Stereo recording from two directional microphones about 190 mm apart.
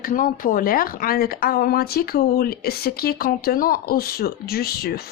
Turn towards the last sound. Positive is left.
turn(degrees=55)  # may be behind; listen again after turning